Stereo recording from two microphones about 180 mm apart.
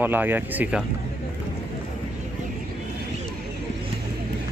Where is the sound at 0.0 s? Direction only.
10° right (ahead or behind).